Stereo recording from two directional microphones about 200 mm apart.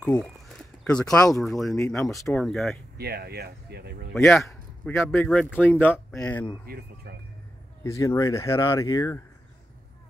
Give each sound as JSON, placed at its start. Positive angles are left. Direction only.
{"t": 0.0, "sound": "a sound", "side_deg": 5}
{"t": 1.0, "sound": "speech", "side_deg": 15}
{"t": 1.4, "sound": "speech", "side_deg": 0}
{"t": 3.0, "sound": "speech", "side_deg": -55}
{"t": 4.1, "sound": "speech", "side_deg": 0}
{"t": 6.7, "sound": "speech", "side_deg": -50}
{"t": 7.8, "sound": "speech", "side_deg": 15}